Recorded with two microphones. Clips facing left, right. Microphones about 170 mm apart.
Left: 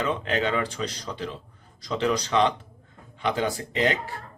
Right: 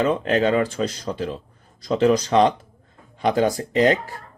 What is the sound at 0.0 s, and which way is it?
Speech, 40° right (ahead or behind).